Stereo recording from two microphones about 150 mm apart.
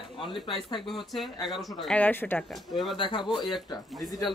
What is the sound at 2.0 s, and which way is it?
Speech, 15° left (ahead or behind).